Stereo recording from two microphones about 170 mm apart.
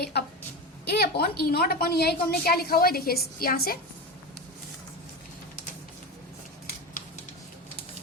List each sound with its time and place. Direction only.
0.0 s a woman's voice: 70° left (ahead or behind)